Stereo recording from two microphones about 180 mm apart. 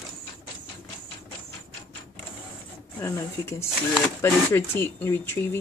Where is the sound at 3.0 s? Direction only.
15° left (ahead or behind).